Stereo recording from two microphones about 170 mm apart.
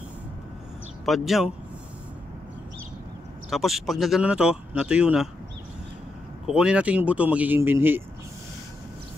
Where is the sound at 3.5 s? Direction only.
Centre (ahead or behind).